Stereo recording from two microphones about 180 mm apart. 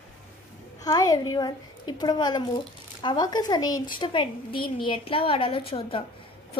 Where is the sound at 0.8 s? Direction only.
20° left (ahead or behind).